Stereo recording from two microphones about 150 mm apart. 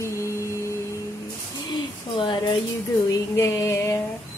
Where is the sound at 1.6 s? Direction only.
30° left (ahead or behind).